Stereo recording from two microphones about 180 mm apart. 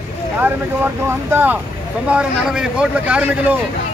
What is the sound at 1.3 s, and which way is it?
Speech, 10° right (ahead or behind).